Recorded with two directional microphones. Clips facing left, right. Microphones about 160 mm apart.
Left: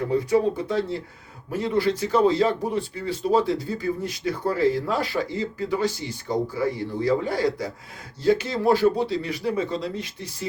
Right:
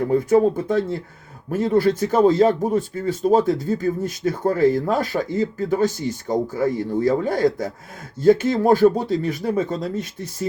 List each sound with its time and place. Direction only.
0.1 s speech: 50° right (ahead or behind)